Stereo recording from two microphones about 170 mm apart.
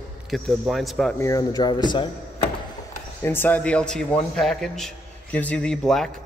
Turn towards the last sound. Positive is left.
turn(degrees=5)  # may be behind; listen again after turning